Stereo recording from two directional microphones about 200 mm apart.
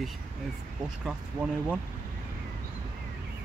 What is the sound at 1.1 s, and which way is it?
Speech, 5° right (ahead or behind).